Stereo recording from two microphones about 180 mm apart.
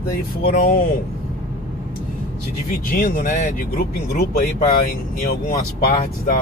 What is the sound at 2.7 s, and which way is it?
Speech, 50° left (ahead or behind).